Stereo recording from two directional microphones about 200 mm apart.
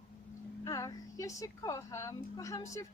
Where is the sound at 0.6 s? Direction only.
15° left (ahead or behind).